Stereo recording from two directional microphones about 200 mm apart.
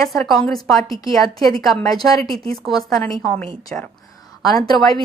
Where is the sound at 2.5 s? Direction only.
Centre (ahead or behind).